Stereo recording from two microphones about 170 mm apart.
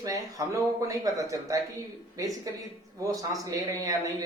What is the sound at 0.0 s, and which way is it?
Speech, 20° right (ahead or behind).